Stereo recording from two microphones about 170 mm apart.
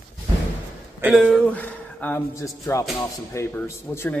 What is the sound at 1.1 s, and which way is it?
A man's voice, 5° left (ahead or behind).